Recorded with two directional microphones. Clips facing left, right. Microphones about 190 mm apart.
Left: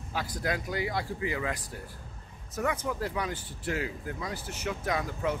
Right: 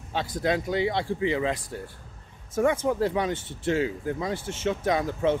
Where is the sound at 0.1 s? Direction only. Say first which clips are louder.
Right 6 dB; 25° right (ahead or behind).